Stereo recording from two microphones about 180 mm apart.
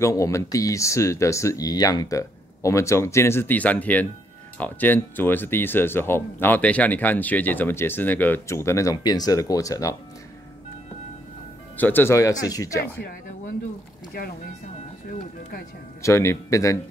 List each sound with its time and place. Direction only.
0.0 s speech: 15° left (ahead or behind)
11.7 s speech: 10° left (ahead or behind)
16.0 s speech: 15° left (ahead or behind)